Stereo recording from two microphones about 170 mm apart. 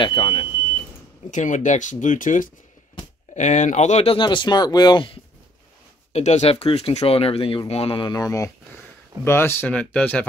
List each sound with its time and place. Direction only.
0.0 s speech: 30° left (ahead or behind)
1.3 s speech: 45° left (ahead or behind); by 5.2 s 30° left (ahead or behind)
6.1 s speech: 40° left (ahead or behind); by 10.2 s 5° left (ahead or behind)